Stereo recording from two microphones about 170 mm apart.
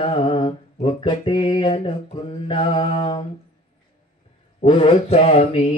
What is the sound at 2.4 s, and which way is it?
Mantra, 30° left (ahead or behind).